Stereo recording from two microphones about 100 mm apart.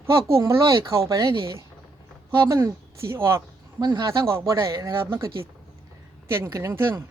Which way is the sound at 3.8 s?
45° right (ahead or behind).